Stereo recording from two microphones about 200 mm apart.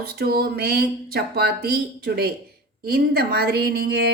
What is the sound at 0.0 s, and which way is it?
Speech, 50° right (ahead or behind).